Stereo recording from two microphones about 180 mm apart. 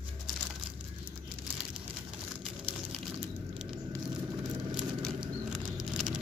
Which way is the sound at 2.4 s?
5° right (ahead or behind).